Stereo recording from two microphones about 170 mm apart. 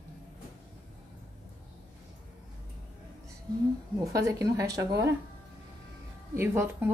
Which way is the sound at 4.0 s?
20° right (ahead or behind).